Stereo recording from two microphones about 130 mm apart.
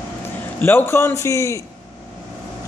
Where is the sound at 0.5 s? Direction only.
15° left (ahead or behind).